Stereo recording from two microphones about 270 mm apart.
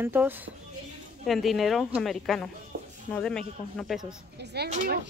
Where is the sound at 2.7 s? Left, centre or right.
Right.